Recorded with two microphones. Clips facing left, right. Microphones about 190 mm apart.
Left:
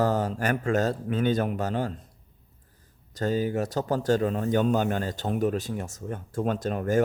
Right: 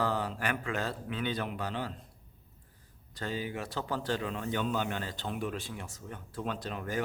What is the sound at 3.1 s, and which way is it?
Speech, 40° left (ahead or behind).